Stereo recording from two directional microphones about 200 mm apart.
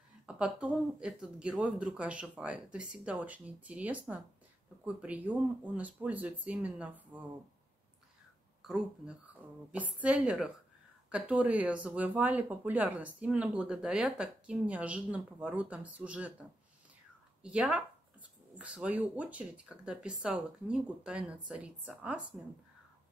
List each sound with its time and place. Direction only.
0.3 s speech: 5° right (ahead or behind)
8.6 s speech: centre (ahead or behind)
17.4 s speech: 5° right (ahead or behind)